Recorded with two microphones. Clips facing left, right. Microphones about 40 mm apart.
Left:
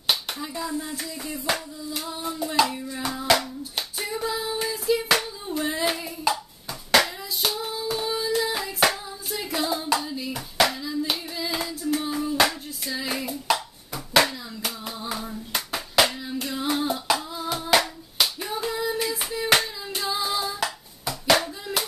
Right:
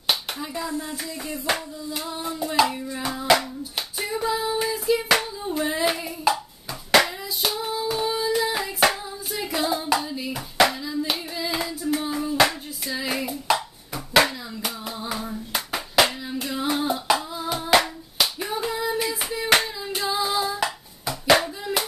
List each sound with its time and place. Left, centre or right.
0.0 s hands: centre